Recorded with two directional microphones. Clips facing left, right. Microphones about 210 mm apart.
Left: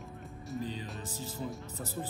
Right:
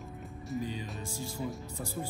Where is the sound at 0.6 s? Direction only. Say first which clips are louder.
Even; 10° right (ahead or behind).